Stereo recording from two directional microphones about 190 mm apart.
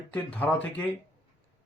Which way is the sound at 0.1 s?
10° left (ahead or behind).